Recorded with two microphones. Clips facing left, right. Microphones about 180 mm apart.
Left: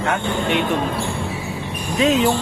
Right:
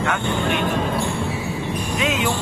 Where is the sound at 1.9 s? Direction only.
35° left (ahead or behind).